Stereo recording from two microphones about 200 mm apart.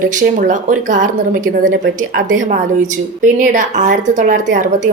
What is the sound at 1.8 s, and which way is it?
Speech, 70° right (ahead or behind).